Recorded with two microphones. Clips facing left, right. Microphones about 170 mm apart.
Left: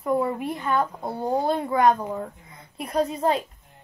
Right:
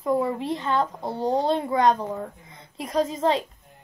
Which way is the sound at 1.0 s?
10° left (ahead or behind).